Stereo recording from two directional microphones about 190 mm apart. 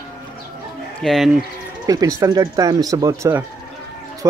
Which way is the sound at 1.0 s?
Centre (ahead or behind).